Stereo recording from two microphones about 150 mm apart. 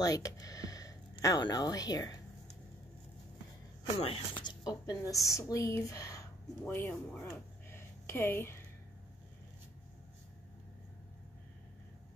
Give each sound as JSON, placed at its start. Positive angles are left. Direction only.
{"t": 0.0, "sound": "speech", "side_deg": 25}
{"t": 4.0, "sound": "speech", "side_deg": 35}
{"t": 7.7, "sound": "a sound", "side_deg": 15}